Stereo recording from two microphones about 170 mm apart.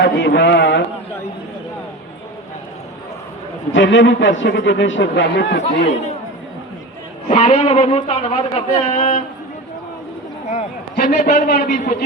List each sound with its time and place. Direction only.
0.0 s a man's voice: 85° left
3.7 s a man's voice: 90° left
5.8 s speech: 45° left (ahead or behind)
7.3 s speech: 40° left (ahead or behind)
10.9 s a man's voice: 60° left (ahead or behind)